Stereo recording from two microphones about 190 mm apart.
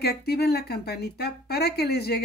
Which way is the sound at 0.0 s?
55° left (ahead or behind).